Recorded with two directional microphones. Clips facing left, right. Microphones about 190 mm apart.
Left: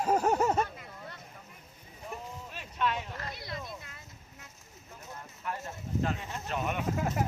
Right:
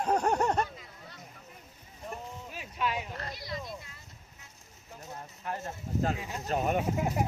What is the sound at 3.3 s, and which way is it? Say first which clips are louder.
Speech: right 2 dB; 55° left (ahead or behind).